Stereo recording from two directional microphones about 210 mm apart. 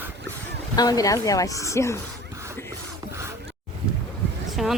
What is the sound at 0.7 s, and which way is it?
Speech, 15° left (ahead or behind).